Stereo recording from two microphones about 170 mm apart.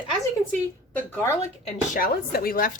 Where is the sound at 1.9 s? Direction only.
60° left (ahead or behind).